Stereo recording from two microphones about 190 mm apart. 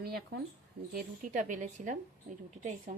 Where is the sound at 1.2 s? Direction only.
40° right (ahead or behind).